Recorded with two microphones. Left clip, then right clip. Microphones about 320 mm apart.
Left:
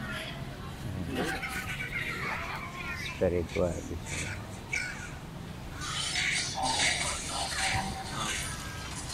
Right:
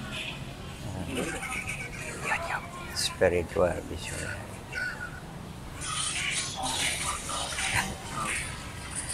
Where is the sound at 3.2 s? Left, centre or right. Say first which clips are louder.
Right 4 dB; right.